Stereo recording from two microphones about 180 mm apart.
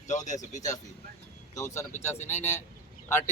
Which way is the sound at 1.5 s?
15° left (ahead or behind).